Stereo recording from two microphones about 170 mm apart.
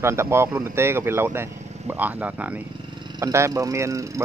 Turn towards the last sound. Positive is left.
turn(degrees=-20)  # may be behind; listen again after turning